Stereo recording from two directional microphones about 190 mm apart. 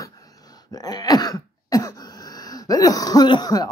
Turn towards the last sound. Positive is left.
turn(degrees=20)  # may be behind; listen again after turning